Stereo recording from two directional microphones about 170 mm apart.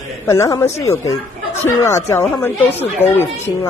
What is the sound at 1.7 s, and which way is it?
Speech, 15° left (ahead or behind).